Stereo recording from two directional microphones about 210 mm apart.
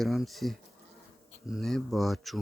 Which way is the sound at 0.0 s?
Centre (ahead or behind).